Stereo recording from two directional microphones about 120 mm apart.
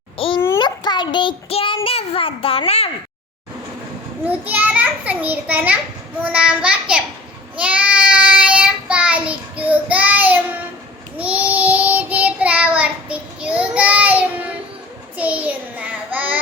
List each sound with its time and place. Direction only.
0.2 s a sound: 50° left (ahead or behind)
0.6 s a child's voice: 40° left (ahead or behind); by 2.9 s 60° left (ahead or behind)
4.3 s a child's voice: 15° right (ahead or behind)
7.6 s child singing: 10° right (ahead or behind)